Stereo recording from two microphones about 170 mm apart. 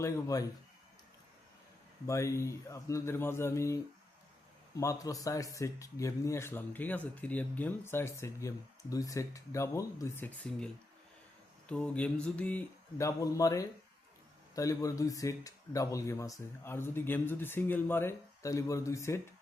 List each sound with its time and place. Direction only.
0.0 s a man's voice: 20° left (ahead or behind)
2.0 s speech: 15° left (ahead or behind)
4.8 s speech: 20° left (ahead or behind)
11.7 s speech: 5° left (ahead or behind)
13.0 s a man's voice: 20° left (ahead or behind)